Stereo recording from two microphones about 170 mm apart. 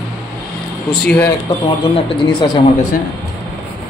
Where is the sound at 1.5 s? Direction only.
20° left (ahead or behind).